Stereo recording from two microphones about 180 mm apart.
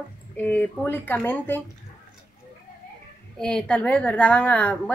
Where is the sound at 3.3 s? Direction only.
5° left (ahead or behind).